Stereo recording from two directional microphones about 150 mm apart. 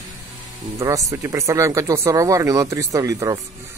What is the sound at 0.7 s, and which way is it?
Speech, 20° right (ahead or behind).